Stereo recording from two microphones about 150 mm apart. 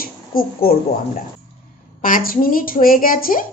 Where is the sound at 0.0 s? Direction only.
75° left (ahead or behind).